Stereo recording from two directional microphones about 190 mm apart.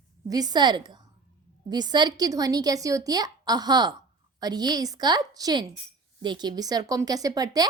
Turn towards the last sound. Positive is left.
turn(degrees=-20)  # may be behind; listen again after turning